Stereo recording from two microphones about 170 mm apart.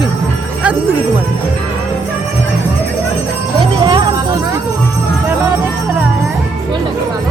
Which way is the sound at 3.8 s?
25° right (ahead or behind).